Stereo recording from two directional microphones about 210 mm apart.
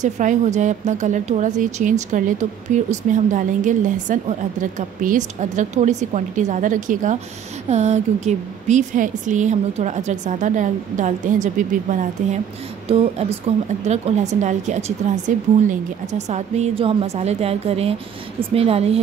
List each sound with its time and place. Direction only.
0.0 s a woman's voice: 35° right (ahead or behind)
14.4 s a woman's voice: 35° right (ahead or behind)